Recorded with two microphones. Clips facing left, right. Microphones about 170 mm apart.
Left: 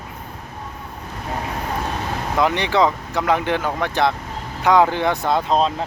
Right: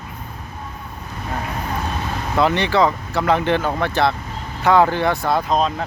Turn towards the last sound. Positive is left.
turn(degrees=30)  # may be behind; listen again after turning